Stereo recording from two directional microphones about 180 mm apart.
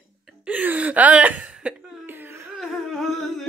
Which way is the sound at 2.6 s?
Centre (ahead or behind).